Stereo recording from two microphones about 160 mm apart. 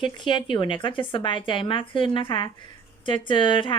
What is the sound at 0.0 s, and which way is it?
Speech, 30° left (ahead or behind).